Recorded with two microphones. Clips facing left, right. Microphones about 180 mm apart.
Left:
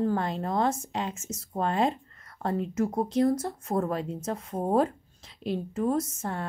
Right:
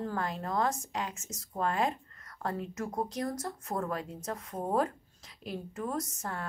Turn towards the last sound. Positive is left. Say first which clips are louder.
# left 7 dB
turn(degrees=25)  # may be behind; listen again after turning